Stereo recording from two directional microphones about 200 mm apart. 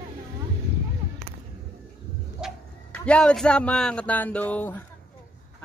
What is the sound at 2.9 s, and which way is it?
A man's voice, 5° left (ahead or behind).